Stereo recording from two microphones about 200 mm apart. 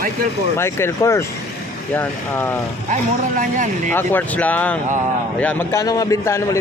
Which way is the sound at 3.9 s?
10° left (ahead or behind).